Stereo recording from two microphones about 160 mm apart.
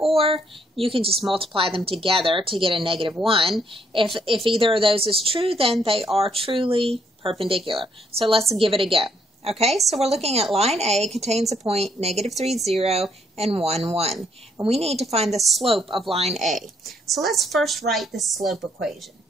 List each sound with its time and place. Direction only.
0.1 s speech: 35° right (ahead or behind)
16.8 s a woman's voice: centre (ahead or behind)